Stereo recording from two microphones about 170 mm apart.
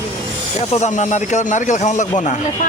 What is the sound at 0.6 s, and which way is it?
Speech, 40° left (ahead or behind).